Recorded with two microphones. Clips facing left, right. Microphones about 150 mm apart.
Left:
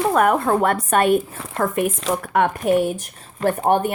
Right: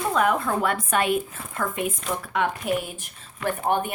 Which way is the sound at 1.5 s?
80° left.